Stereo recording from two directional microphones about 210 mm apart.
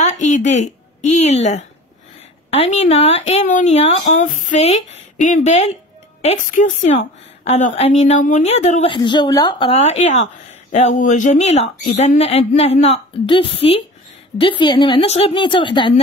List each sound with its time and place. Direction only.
0.0 s a woman's voice: 35° left (ahead or behind)
8.9 s speech: 20° left (ahead or behind)